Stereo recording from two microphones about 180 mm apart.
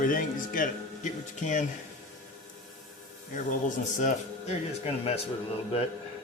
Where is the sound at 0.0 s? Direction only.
50° left (ahead or behind).